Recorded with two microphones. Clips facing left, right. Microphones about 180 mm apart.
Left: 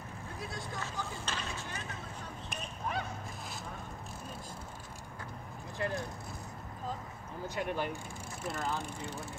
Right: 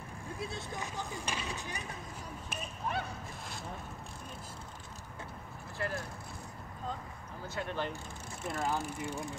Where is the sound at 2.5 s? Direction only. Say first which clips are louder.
Right 1 dB; centre (ahead or behind).